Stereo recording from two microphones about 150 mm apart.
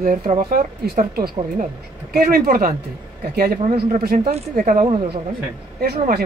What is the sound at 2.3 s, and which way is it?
Speech, 75° right (ahead or behind).